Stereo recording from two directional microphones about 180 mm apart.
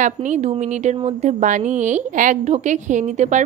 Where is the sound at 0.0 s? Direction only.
45° right (ahead or behind).